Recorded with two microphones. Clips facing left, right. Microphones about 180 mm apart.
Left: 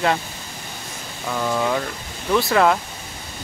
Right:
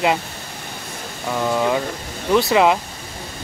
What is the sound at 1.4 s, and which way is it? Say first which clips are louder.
Speech: right 2 dB; 10° right (ahead or behind).